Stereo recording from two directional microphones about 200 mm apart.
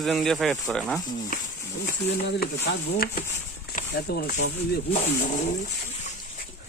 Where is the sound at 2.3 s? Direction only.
55° left (ahead or behind).